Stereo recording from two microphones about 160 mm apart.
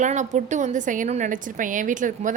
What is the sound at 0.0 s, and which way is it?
A woman's voice, 50° right (ahead or behind).